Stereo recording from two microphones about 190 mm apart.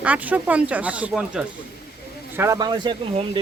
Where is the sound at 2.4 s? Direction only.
20° right (ahead or behind).